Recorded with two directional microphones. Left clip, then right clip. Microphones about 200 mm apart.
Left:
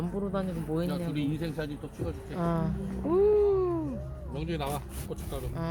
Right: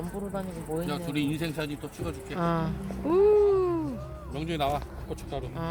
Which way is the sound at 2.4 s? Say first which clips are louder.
Right 3 dB; 5° right (ahead or behind).